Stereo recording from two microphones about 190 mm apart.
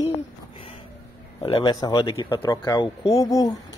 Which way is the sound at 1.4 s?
25° left (ahead or behind).